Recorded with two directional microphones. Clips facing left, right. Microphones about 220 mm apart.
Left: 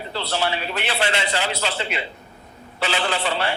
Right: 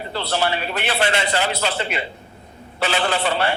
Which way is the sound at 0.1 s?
60° right (ahead or behind).